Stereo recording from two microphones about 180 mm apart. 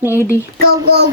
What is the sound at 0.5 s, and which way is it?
Speech, 60° right (ahead or behind).